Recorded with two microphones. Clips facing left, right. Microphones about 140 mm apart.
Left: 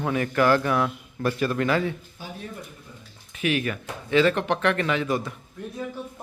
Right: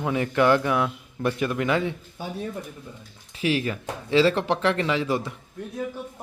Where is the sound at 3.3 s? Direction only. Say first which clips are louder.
Right 1 dB; 30° right (ahead or behind).